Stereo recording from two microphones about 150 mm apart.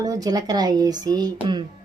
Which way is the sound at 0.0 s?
25° right (ahead or behind).